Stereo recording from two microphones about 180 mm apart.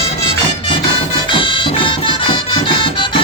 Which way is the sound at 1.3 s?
30° left (ahead or behind).